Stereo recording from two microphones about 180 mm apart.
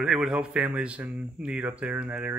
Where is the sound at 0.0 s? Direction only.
5° right (ahead or behind).